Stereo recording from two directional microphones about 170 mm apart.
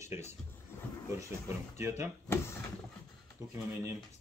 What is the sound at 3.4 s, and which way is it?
Speech, 20° right (ahead or behind).